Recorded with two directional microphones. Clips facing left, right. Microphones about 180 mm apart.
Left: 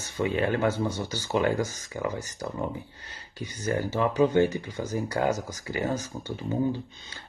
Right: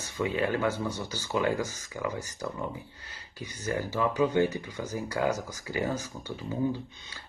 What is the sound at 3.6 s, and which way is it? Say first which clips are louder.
Speech: left 3 dB; 25° left (ahead or behind).